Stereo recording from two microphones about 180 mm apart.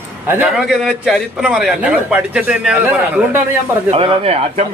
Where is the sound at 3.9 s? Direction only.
30° right (ahead or behind).